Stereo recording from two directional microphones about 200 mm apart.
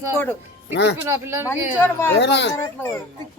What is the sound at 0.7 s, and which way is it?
Speech, 60° left (ahead or behind).